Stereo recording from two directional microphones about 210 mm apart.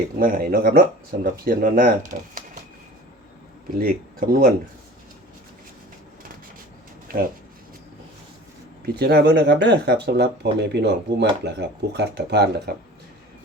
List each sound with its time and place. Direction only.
0.2 s speech: 45° right (ahead or behind)
3.8 s speech: 45° right (ahead or behind)
7.1 s speech: 45° right (ahead or behind)
9.0 s speech: 50° right (ahead or behind)